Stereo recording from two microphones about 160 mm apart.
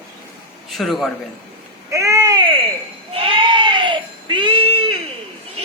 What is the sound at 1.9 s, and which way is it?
Baby cry, 20° right (ahead or behind).